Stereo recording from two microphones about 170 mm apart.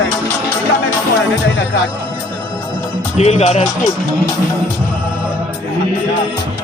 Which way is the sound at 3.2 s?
40° left (ahead or behind).